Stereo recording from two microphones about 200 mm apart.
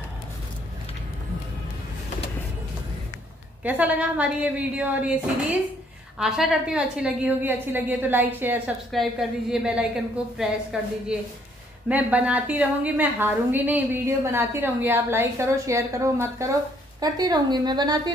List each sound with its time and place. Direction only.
3.6 s a woman's voice: 10° right (ahead or behind)